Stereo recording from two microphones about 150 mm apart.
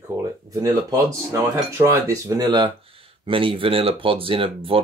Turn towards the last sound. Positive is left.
turn(degrees=-35)  # may be behind; listen again after turning